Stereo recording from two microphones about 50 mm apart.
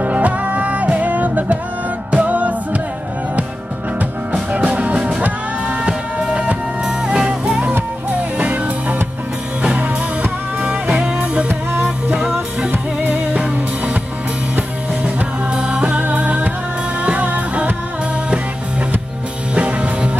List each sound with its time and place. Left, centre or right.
0.0 s music: right
4.5 s music: right
4.9 s music: centre; by 8.9 s right
10.6 s music: right
13.1 s music: right
15.5 s music: centre
15.9 s music: right
19.5 s music: right